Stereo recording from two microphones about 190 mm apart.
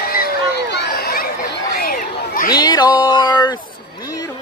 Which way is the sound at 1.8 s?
50° left (ahead or behind).